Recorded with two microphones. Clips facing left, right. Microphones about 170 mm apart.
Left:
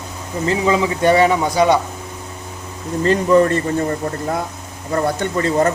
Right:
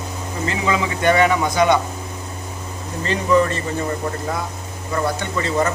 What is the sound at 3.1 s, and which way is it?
Speech, 45° left (ahead or behind).